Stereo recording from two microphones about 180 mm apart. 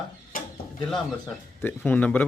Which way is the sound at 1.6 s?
10° left (ahead or behind).